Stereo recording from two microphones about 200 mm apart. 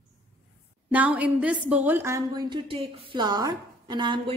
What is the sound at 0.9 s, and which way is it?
Speech, 5° right (ahead or behind).